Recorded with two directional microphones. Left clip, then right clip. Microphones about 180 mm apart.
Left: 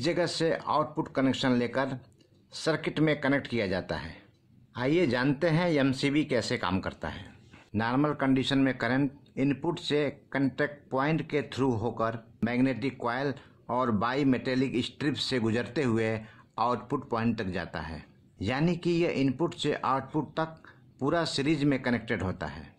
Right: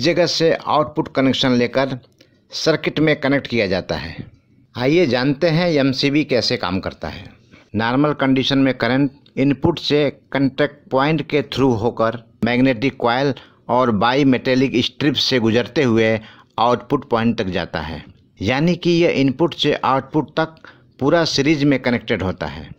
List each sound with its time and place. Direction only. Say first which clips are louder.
0.0 s speech: right 12 dB; 30° right (ahead or behind)